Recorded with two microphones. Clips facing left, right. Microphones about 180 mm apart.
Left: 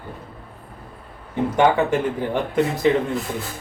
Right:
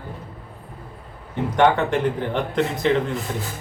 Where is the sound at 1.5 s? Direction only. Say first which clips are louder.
Even; 10° left (ahead or behind).